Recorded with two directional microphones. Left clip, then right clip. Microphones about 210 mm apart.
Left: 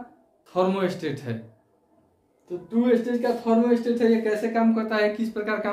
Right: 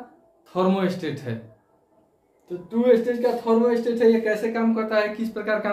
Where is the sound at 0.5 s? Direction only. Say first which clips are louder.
Right 1 dB; 15° left (ahead or behind).